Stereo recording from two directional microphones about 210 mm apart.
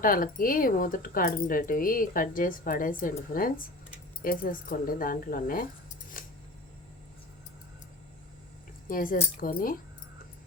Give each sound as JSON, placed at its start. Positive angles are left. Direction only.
{"t": 0.0, "sound": "speech", "side_deg": 40}
{"t": 6.2, "sound": "a sound", "side_deg": 40}
{"t": 8.9, "sound": "speech", "side_deg": 40}